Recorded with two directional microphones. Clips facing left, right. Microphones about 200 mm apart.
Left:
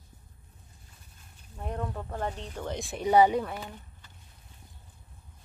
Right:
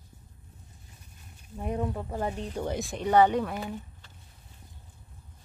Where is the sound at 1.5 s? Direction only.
10° right (ahead or behind).